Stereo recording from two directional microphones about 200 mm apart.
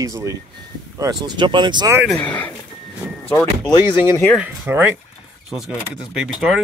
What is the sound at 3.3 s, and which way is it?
Speech, 15° left (ahead or behind).